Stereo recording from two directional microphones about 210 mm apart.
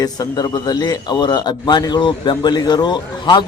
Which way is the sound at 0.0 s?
20° left (ahead or behind).